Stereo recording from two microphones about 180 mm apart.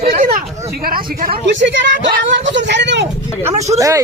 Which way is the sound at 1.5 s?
85° right.